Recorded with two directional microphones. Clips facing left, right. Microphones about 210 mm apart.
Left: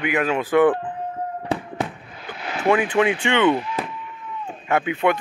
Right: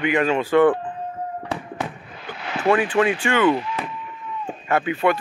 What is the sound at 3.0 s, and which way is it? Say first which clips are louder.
Speech: even; 20° left (ahead or behind).